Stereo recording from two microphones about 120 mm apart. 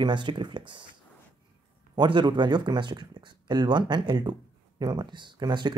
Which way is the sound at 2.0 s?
40° right (ahead or behind).